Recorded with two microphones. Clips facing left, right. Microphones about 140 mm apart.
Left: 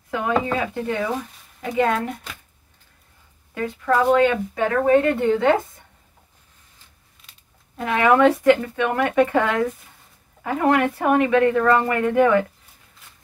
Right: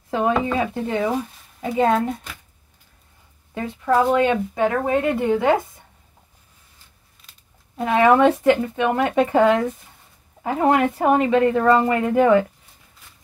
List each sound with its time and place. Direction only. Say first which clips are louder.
0.1 s a woman's voice: right 2 dB; 25° right (ahead or behind)
3.5 s speech: right 1 dB; 20° right (ahead or behind)
7.7 s a woman's voice: right 2 dB; 20° right (ahead or behind)